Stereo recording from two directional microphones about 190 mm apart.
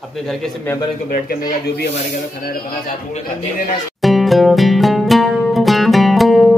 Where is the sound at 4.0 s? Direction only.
Centre (ahead or behind).